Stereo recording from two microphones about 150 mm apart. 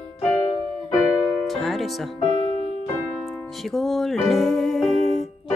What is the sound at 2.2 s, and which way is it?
Music, 45° left (ahead or behind).